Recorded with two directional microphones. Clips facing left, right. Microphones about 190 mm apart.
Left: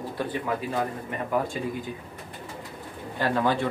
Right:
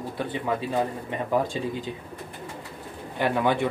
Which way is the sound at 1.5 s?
25° right (ahead or behind).